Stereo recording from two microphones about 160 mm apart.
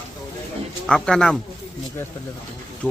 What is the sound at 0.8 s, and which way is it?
Speech, 5° left (ahead or behind).